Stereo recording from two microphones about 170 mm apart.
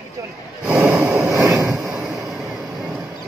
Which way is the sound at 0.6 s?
5° right (ahead or behind).